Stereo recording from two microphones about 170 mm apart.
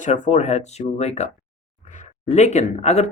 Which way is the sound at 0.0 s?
45° left (ahead or behind).